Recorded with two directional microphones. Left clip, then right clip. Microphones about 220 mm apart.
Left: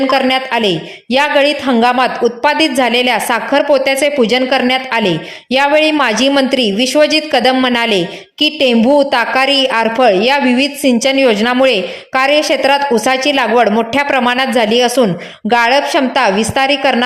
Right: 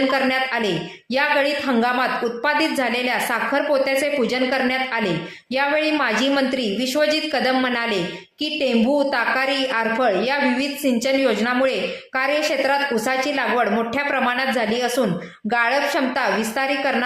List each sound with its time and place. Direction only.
0.1 s a woman's voice: 30° left (ahead or behind)